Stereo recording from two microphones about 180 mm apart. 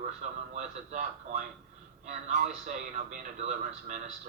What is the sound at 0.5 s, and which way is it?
Speech, 40° right (ahead or behind).